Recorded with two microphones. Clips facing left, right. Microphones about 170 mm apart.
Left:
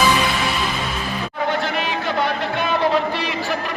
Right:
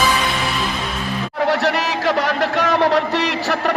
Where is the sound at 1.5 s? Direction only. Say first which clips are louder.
Right 4 dB; 80° right.